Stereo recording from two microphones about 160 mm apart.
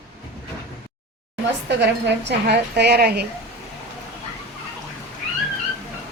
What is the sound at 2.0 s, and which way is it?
A woman's voice, 90° right.